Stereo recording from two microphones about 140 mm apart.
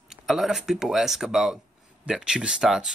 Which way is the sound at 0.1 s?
Centre (ahead or behind).